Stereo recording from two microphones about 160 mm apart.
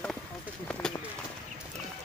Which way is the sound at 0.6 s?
10° left (ahead or behind).